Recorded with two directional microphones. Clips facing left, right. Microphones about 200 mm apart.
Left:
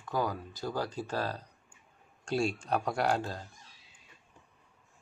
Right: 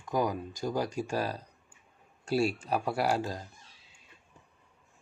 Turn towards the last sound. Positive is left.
turn(degrees=-10)  # may be behind; listen again after turning